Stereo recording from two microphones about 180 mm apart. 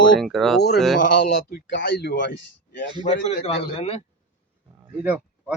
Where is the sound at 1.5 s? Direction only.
60° left (ahead or behind).